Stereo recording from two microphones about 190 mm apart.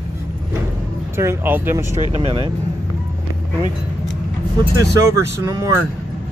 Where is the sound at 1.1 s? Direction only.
15° right (ahead or behind).